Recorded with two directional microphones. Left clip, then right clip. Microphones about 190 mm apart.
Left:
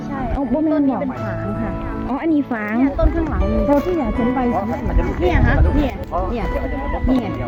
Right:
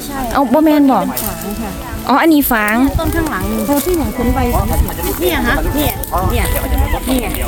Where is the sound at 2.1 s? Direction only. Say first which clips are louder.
Right 10 dB; 40° right (ahead or behind).